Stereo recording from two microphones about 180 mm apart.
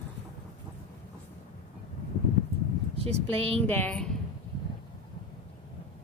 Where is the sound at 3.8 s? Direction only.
5° left (ahead or behind).